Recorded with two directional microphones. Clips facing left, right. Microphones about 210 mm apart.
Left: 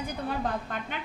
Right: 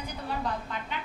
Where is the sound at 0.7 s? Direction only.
50° left (ahead or behind).